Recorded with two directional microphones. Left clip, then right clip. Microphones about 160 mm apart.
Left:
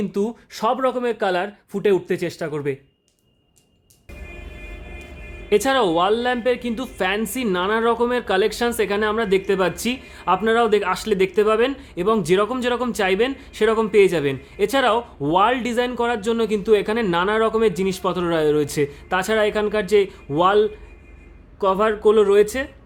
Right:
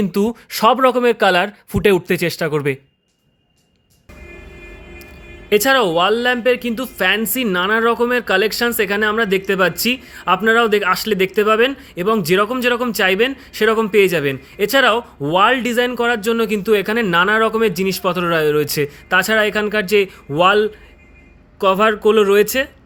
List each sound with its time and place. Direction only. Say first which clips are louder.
0.0 s speech: right 5 dB; 30° right (ahead or behind)
5.5 s speech: right 4 dB; 5° right (ahead or behind)